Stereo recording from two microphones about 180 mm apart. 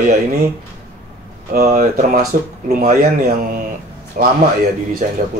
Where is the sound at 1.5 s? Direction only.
50° right (ahead or behind).